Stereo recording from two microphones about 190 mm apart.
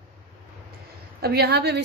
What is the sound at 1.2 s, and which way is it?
Speech, 55° right (ahead or behind).